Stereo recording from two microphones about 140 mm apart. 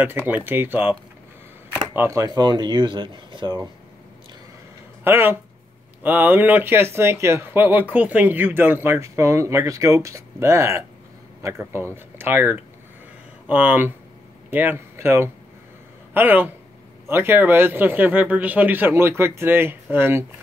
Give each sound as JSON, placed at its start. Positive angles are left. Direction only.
{"t": 0.0, "sound": "speech", "side_deg": -15}
{"t": 2.0, "sound": "speech", "side_deg": -20}
{"t": 5.0, "sound": "speech", "side_deg": -15}